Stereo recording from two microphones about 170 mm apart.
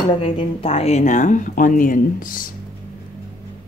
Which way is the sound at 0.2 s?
35° left (ahead or behind).